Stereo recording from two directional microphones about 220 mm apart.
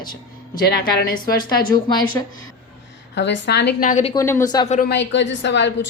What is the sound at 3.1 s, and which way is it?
Speech, 50° left (ahead or behind).